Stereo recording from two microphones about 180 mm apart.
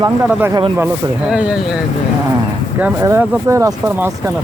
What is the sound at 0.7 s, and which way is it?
Speech, 10° right (ahead or behind).